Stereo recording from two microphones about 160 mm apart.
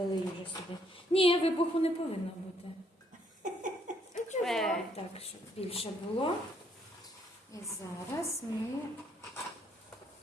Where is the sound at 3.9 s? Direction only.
50° right (ahead or behind).